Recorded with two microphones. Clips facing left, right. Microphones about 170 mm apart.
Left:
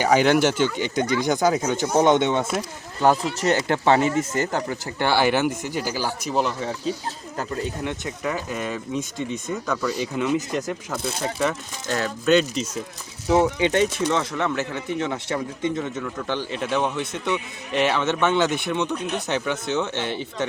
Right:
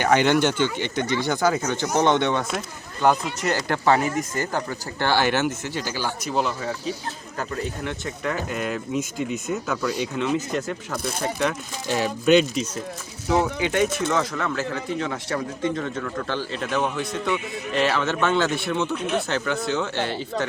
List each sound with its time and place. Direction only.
0.0 s speech: 10° left (ahead or behind)
7.3 s speech: 20° left (ahead or behind)
8.2 s speech: 5° left (ahead or behind)
11.9 s speech: 15° right (ahead or behind)
13.3 s speech: 25° left (ahead or behind)